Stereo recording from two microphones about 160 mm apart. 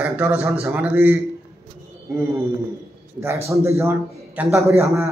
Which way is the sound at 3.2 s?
20° right (ahead or behind).